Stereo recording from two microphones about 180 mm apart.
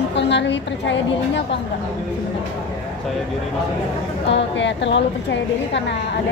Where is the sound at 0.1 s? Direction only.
75° left (ahead or behind).